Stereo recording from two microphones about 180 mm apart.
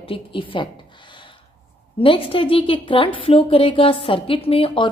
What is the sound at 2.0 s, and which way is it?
A woman's voice, 30° left (ahead or behind).